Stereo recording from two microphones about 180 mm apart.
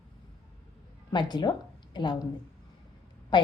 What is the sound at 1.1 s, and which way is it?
A woman's voice, 25° left (ahead or behind).